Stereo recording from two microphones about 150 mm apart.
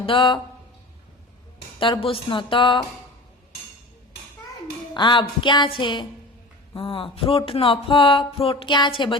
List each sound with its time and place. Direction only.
0.0 s speech: 35° left (ahead or behind)
1.8 s speech: 35° left (ahead or behind)
4.9 s speech: 30° left (ahead or behind)